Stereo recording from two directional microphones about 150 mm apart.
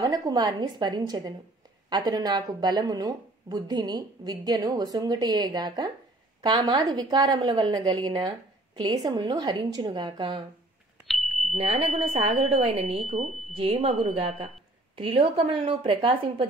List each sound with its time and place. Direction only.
0.0 s a woman's voice: 25° right (ahead or behind)
11.1 s a sound: centre (ahead or behind)
11.5 s speech: 40° right (ahead or behind)